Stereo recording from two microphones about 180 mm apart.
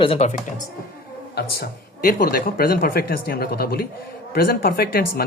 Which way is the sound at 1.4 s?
60° left (ahead or behind).